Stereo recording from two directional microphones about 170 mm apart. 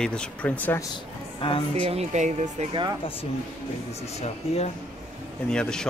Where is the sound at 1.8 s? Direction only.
40° right (ahead or behind).